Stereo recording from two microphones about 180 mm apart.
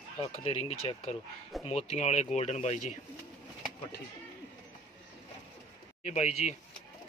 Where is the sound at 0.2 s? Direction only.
35° left (ahead or behind).